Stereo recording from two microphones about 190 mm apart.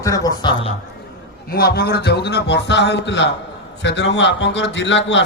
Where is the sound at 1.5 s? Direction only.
55° left (ahead or behind).